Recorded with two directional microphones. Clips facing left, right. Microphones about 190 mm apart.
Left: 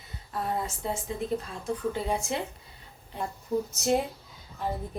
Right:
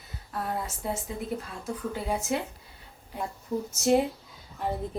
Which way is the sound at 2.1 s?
5° right (ahead or behind).